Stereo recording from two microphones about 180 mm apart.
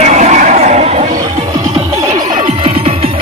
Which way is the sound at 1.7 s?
40° right (ahead or behind).